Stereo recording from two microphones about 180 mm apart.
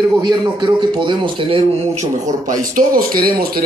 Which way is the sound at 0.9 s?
25° right (ahead or behind).